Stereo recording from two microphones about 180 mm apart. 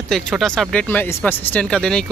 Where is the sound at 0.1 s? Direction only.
Centre (ahead or behind).